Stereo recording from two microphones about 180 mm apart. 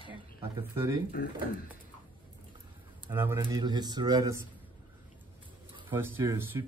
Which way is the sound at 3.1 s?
15° right (ahead or behind).